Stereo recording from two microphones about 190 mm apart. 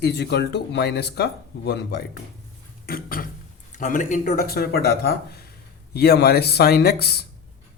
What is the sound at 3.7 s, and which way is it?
Speech, 45° left (ahead or behind).